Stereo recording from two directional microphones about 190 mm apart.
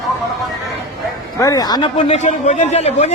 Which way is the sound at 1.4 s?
20° left (ahead or behind).